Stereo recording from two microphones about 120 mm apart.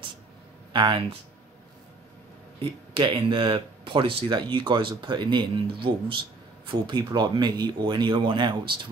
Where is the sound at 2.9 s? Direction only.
45° right (ahead or behind).